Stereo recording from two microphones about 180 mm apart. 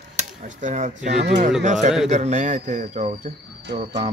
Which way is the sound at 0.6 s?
40° right (ahead or behind).